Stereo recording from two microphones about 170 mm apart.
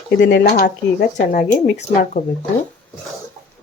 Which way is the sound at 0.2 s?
90° left.